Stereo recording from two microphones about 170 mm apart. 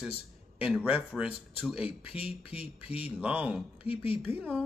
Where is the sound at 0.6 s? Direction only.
5° right (ahead or behind).